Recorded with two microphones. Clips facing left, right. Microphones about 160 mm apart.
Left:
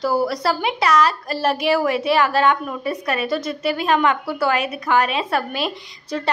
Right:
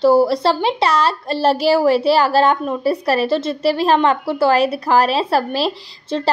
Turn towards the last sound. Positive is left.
turn(degrees=-30)  # may be behind; listen again after turning